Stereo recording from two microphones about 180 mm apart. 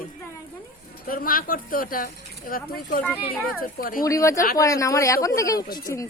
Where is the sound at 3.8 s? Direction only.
50° left (ahead or behind).